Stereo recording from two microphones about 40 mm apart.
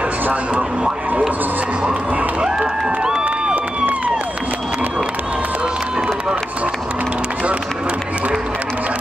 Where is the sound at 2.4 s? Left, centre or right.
Right.